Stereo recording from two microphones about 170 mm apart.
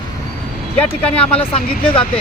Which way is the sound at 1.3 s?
35° left (ahead or behind).